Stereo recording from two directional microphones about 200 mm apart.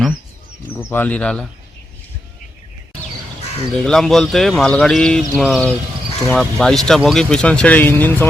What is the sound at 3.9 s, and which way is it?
Speech, centre (ahead or behind).